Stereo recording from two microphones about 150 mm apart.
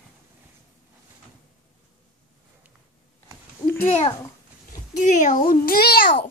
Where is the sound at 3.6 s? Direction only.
15° left (ahead or behind).